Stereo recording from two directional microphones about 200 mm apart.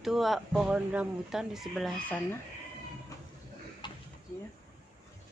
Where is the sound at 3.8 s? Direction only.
25° left (ahead or behind).